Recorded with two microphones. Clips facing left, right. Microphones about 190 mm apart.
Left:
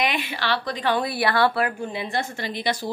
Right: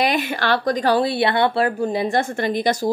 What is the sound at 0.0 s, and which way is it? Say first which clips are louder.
A woman's voice: right 5 dB; 45° right (ahead or behind).